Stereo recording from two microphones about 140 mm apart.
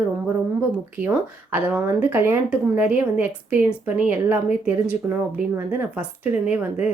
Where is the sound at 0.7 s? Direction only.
15° right (ahead or behind).